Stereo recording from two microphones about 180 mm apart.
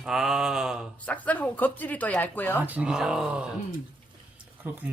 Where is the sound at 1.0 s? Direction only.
10° left (ahead or behind).